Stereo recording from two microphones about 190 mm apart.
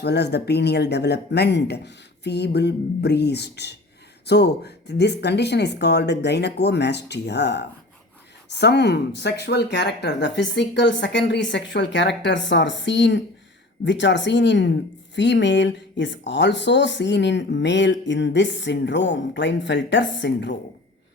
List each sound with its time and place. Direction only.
0.0 s a woman's voice: 60° left (ahead or behind)